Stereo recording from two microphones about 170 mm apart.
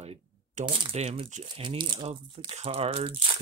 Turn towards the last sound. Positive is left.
turn(degrees=-35)  # may be behind; listen again after turning